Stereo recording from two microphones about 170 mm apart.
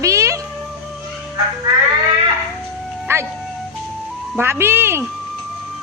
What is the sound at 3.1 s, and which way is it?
Music, 15° right (ahead or behind).